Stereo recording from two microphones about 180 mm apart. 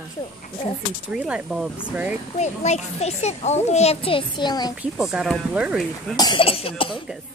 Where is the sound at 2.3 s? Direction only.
40° left (ahead or behind); by 4.7 s 25° left (ahead or behind).